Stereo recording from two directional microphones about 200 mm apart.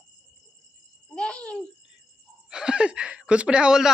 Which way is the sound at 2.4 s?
5° right (ahead or behind).